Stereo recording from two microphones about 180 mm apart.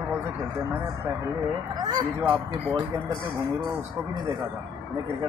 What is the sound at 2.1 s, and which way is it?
Speech, 5° right (ahead or behind).